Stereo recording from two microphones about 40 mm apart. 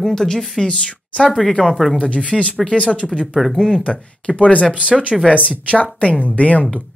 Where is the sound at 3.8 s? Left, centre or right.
Left.